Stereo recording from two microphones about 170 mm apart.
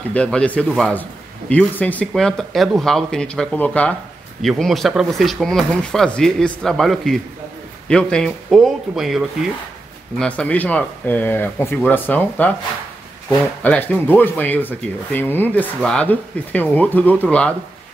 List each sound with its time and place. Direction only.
0.1 s speech: 5° left (ahead or behind)
13.6 s speech: 10° left (ahead or behind)